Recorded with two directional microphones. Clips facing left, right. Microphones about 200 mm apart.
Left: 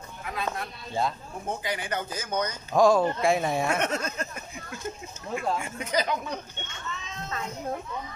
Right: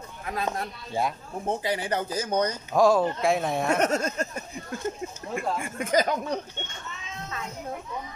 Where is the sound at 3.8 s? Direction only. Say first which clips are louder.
Right 4 dB; 40° right (ahead or behind).